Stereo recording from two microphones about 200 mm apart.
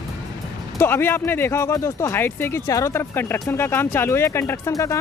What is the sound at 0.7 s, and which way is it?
Speech, 10° left (ahead or behind).